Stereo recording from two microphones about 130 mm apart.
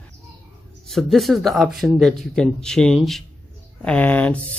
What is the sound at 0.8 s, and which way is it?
Speech, centre (ahead or behind).